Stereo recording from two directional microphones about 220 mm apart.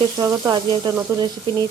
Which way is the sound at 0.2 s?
15° right (ahead or behind).